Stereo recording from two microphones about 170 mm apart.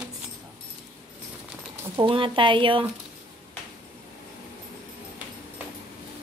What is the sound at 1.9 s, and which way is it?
Speech, 30° right (ahead or behind).